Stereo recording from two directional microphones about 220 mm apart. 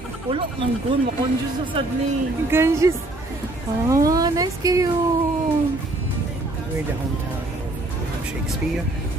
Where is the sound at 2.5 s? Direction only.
10° right (ahead or behind).